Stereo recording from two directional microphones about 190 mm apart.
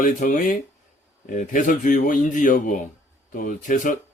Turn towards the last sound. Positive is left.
turn(degrees=45)  # may be behind; listen again after turning